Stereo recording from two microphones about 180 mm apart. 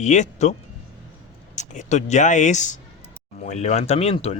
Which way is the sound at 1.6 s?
40° left (ahead or behind).